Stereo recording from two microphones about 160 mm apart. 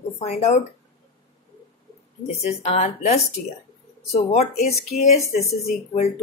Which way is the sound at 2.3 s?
45° left (ahead or behind).